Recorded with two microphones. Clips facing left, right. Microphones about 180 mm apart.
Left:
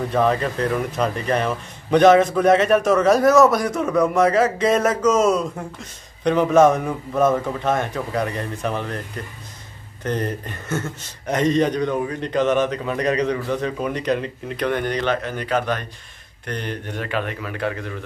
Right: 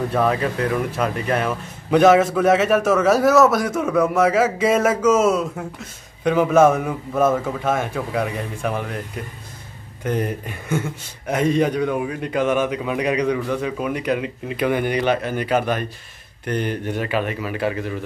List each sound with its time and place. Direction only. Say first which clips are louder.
0.1 s a man's voice: left 3 dB; 5° right (ahead or behind)